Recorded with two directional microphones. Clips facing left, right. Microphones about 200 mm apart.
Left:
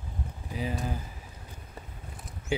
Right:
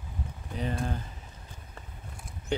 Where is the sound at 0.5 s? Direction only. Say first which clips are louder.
Even; 5° left (ahead or behind).